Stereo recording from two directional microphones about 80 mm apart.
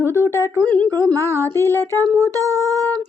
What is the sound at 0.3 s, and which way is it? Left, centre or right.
Speech, right.